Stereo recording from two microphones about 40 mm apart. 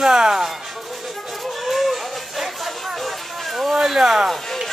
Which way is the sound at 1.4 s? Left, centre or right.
Centre.